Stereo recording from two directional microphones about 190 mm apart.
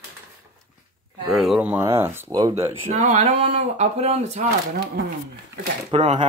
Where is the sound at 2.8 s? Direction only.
35° right (ahead or behind).